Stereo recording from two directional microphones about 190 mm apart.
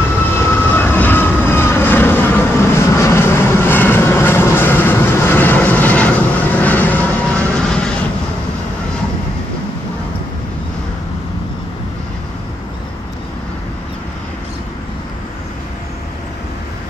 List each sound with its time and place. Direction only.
0.4 s vehicle: 10° left (ahead or behind)